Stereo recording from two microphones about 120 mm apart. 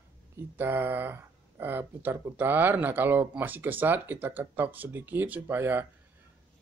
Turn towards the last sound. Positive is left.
turn(degrees=-15)  # may be behind; listen again after turning